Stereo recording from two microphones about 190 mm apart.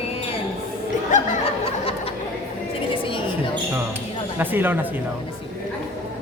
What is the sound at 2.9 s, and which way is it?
Music, 25° left (ahead or behind).